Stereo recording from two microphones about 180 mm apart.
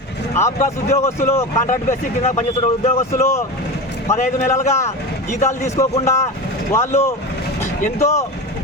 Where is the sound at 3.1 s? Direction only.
15° left (ahead or behind).